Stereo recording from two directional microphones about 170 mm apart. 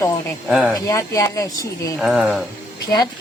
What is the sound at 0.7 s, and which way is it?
Speech, 20° left (ahead or behind).